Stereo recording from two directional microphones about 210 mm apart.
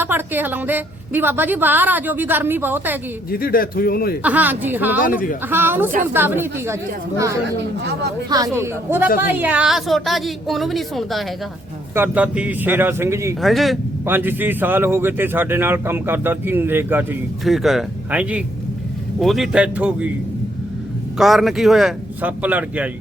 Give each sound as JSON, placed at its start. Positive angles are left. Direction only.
{"t": 0.0, "sound": "speech", "side_deg": -10}
{"t": 3.2, "sound": "a man's voice", "side_deg": 45}
{"t": 4.2, "sound": "speech", "side_deg": -5}
{"t": 7.4, "sound": "speech", "side_deg": -55}
{"t": 8.3, "sound": "a woman's voice", "side_deg": -15}
{"t": 13.4, "sound": "a woman's voice", "side_deg": 0}
{"t": 14.0, "sound": "a woman's voice", "side_deg": -10}
{"t": 21.2, "sound": "a woman's voice", "side_deg": 0}